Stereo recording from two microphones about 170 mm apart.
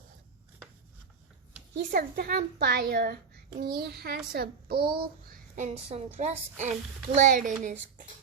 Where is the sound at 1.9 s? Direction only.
60° right (ahead or behind).